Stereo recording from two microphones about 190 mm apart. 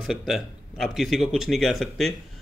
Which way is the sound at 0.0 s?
Centre (ahead or behind).